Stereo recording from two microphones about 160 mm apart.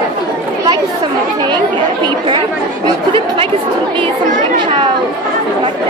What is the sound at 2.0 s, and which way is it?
Speech, 30° right (ahead or behind).